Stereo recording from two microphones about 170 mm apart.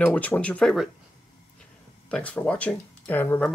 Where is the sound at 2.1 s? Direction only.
5° left (ahead or behind).